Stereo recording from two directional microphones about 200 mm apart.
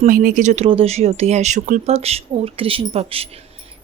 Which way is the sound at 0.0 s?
40° right (ahead or behind).